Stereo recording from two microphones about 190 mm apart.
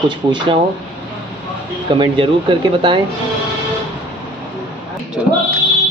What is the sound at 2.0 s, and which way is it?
Speech, 25° right (ahead or behind).